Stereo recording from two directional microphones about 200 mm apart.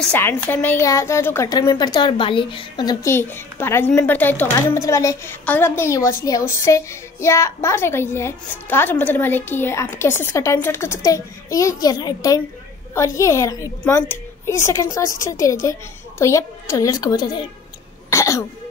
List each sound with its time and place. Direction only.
0.0 s a woman's voice: 10° left (ahead or behind)
18.1 s cough: 15° left (ahead or behind)